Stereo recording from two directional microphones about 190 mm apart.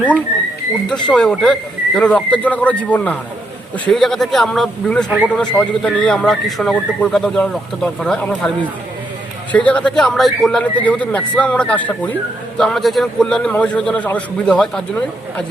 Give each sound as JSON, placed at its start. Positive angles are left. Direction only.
{"t": 1.0, "sound": "speech", "side_deg": 5}
{"t": 9.5, "sound": "speech", "side_deg": 5}